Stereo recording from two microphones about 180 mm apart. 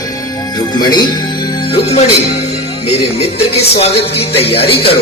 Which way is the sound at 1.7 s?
35° left (ahead or behind).